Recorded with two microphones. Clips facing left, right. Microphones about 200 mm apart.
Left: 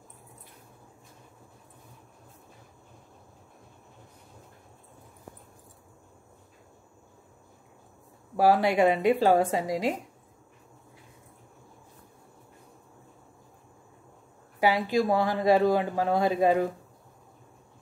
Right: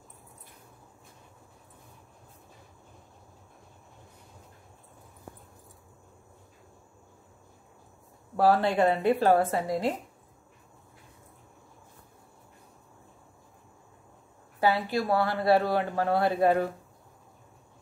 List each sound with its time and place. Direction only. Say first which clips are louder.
8.4 s speech: left 1 dB; 10° left (ahead or behind)
14.6 s speech: left 2 dB; 15° left (ahead or behind)